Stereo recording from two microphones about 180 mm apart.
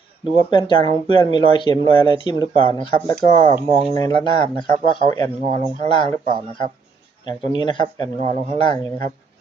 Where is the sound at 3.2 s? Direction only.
40° right (ahead or behind).